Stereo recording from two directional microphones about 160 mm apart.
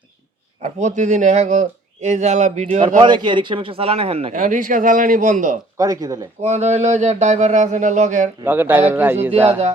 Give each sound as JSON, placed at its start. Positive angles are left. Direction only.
{"t": 0.6, "sound": "speech", "side_deg": -50}
{"t": 3.0, "sound": "a man's voice", "side_deg": -30}
{"t": 4.3, "sound": "speech", "side_deg": -55}
{"t": 5.7, "sound": "speech", "side_deg": -20}
{"t": 6.4, "sound": "speech", "side_deg": -45}
{"t": 8.4, "sound": "speech", "side_deg": -10}